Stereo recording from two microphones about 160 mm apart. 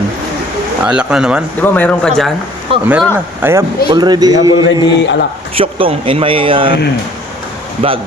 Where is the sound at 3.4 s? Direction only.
10° right (ahead or behind).